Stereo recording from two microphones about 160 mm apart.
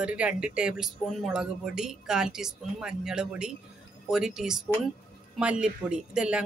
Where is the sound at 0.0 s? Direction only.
5° right (ahead or behind).